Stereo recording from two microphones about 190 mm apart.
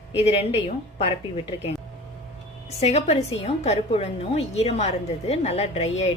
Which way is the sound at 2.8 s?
35° left (ahead or behind).